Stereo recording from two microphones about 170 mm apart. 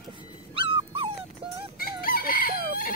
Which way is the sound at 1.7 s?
60° left (ahead or behind).